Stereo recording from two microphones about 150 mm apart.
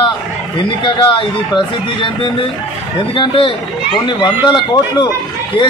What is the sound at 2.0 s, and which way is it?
A man's voice, 35° left (ahead or behind).